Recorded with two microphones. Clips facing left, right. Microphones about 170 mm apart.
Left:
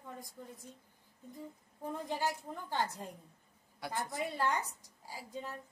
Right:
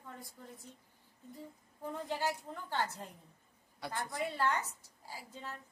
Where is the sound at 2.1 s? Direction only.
15° left (ahead or behind).